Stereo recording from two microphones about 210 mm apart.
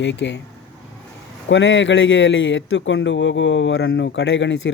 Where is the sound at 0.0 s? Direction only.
60° left (ahead or behind).